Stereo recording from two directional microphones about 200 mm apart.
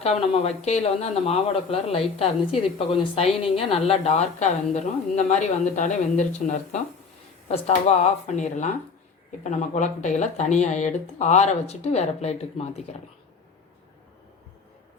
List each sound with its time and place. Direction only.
0.0 s a woman's voice: 30° left (ahead or behind)